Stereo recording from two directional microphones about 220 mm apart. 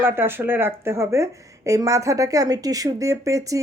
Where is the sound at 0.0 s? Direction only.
10° right (ahead or behind).